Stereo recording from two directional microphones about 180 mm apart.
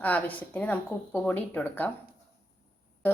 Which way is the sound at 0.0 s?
10° left (ahead or behind).